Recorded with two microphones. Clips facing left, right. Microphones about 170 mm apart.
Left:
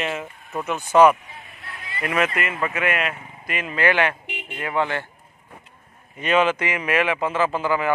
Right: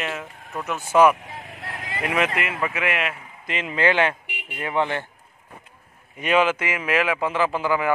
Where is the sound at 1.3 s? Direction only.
90° right.